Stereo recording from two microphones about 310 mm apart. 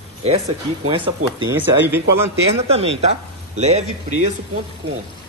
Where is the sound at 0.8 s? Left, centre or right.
Centre.